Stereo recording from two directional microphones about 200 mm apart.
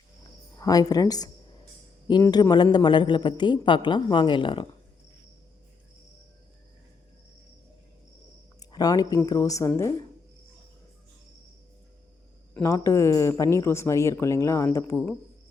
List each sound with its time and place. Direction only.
0.5 s a man's voice: 20° left (ahead or behind)
8.7 s speech: 20° left (ahead or behind)
12.5 s speech: 15° left (ahead or behind)